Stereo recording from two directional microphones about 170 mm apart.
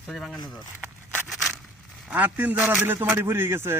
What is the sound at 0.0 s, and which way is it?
Speech, centre (ahead or behind).